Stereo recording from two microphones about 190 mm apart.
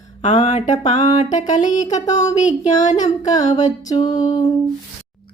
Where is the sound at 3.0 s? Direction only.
20° left (ahead or behind).